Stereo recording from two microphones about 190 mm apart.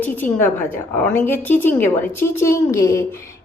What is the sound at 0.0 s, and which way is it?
A woman's voice, 10° left (ahead or behind).